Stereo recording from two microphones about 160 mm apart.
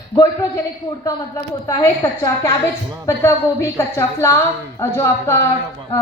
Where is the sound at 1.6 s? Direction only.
20° left (ahead or behind).